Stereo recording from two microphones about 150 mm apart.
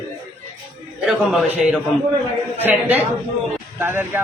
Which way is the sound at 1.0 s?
5° right (ahead or behind).